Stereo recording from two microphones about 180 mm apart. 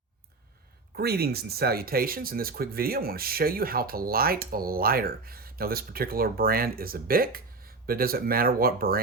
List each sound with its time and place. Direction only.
0.9 s speech: 60° right (ahead or behind)